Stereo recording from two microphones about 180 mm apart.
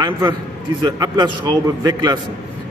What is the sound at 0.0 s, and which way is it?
A man's voice, 25° right (ahead or behind).